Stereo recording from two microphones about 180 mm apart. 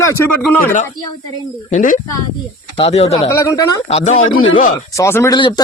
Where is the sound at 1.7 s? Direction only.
50° left (ahead or behind).